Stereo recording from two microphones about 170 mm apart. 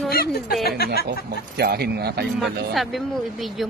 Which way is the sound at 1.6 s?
70° right (ahead or behind).